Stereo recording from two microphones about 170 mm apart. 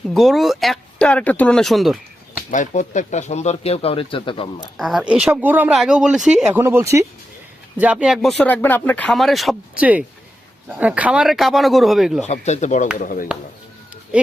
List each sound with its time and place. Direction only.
0.1 s speech: centre (ahead or behind)
2.5 s speech: 45° left (ahead or behind); by 4.4 s 30° left (ahead or behind)
4.8 s speech: centre (ahead or behind)
12.2 s speech: 40° left (ahead or behind)